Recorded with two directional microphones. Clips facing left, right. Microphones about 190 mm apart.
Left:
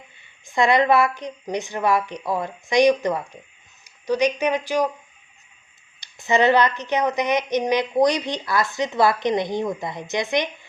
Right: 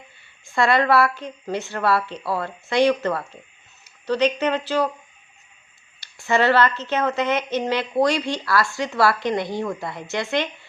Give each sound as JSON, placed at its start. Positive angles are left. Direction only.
{"t": 0.4, "sound": "a woman's voice", "side_deg": 15}
{"t": 6.0, "sound": "a woman's voice", "side_deg": 20}